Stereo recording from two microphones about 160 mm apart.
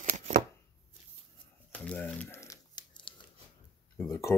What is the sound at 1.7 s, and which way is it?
Crumpling, 10° left (ahead or behind).